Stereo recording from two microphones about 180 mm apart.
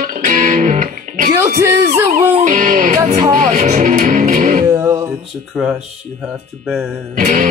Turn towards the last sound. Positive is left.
turn(degrees=-45)  # may be behind; listen again after turning